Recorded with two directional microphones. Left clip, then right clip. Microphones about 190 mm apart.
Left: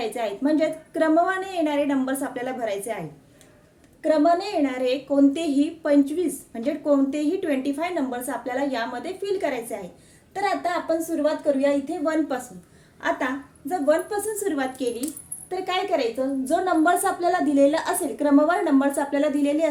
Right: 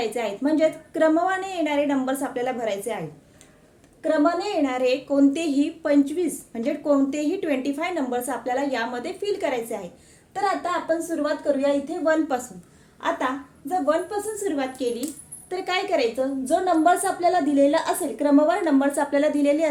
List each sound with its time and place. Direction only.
0.0 s a woman's voice: 10° right (ahead or behind)
4.0 s a woman's voice: 10° right (ahead or behind)
14.1 s a woman's voice: 10° left (ahead or behind)